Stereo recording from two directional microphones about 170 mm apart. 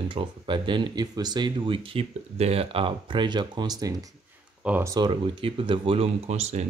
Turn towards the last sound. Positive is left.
turn(degrees=-40)  # may be behind; listen again after turning